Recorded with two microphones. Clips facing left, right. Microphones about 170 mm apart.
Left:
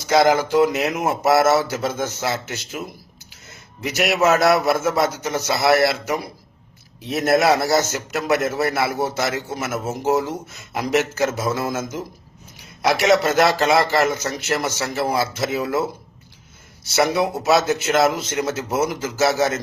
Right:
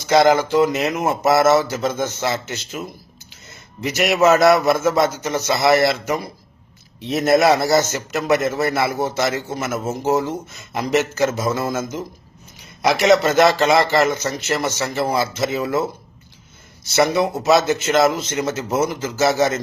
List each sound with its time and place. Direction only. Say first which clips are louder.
0.0 s a man's voice: right 2 dB; 5° left (ahead or behind)
16.9 s a man's voice: right 2 dB; 5° left (ahead or behind)